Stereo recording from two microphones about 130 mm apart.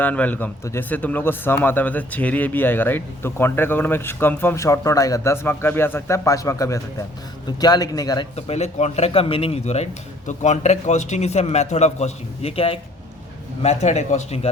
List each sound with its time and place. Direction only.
0.0 s a man's voice: 10° left (ahead or behind); by 8.3 s 30° left (ahead or behind)
8.4 s a man's voice: 55° left (ahead or behind)
13.6 s a man's voice: 60° left (ahead or behind)